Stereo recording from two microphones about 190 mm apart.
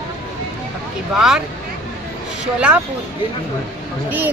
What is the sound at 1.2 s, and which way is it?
Speech, 5° right (ahead or behind).